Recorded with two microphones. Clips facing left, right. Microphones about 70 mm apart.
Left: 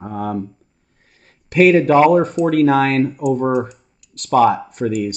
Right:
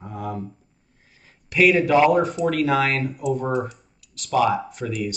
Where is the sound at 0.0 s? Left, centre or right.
Left.